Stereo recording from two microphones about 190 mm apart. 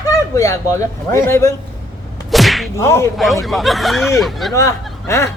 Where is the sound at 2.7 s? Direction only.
15° left (ahead or behind).